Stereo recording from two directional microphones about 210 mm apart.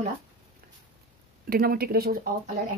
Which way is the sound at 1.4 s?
45° right (ahead or behind).